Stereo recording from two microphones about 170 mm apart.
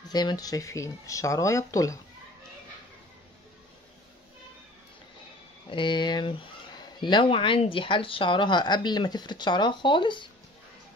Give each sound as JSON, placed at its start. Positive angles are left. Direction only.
{"t": 0.1, "sound": "speech", "side_deg": 25}
{"t": 5.7, "sound": "speech", "side_deg": 30}